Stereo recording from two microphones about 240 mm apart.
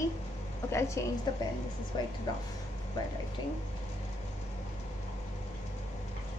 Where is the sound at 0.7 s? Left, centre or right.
Centre.